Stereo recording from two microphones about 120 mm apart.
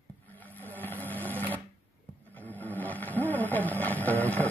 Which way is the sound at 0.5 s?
15° left (ahead or behind).